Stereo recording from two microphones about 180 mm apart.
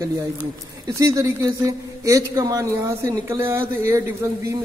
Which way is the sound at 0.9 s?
20° right (ahead or behind).